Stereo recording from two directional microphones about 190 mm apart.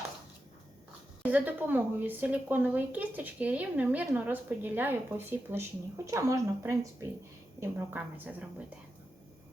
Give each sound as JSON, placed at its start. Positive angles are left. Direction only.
{"t": 1.2, "sound": "a woman's voice", "side_deg": -10}